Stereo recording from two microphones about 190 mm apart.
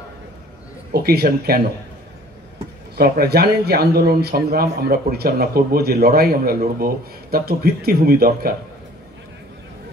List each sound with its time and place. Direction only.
0.9 s speech: 55° right (ahead or behind)
3.0 s speech: 55° right (ahead or behind)